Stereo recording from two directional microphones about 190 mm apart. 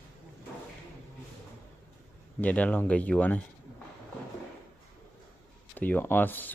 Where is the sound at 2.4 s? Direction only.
10° left (ahead or behind).